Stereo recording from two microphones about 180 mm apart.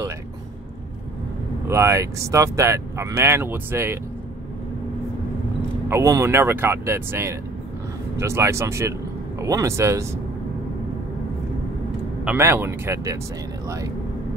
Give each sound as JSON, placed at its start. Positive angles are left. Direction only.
{"t": 1.7, "sound": "speech", "side_deg": -15}
{"t": 5.9, "sound": "speech", "side_deg": -15}
{"t": 12.3, "sound": "speech", "side_deg": -10}